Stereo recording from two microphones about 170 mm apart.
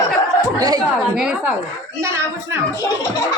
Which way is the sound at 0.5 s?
20° right (ahead or behind).